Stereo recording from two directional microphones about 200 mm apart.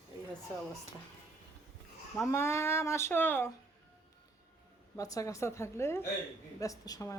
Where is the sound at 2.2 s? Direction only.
15° left (ahead or behind).